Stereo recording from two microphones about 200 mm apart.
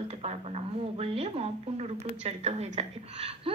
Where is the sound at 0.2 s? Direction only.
30° right (ahead or behind).